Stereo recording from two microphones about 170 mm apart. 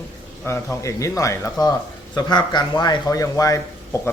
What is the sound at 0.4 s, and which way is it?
Speech, 15° left (ahead or behind).